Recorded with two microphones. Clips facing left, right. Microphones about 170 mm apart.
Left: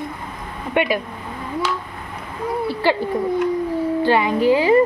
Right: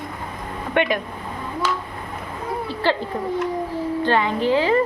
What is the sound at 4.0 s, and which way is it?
Speech, 10° left (ahead or behind).